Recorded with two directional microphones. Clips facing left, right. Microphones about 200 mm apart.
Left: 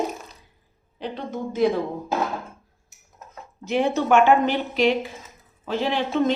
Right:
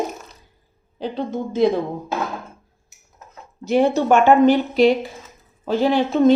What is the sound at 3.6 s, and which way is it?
Speech, 40° right (ahead or behind).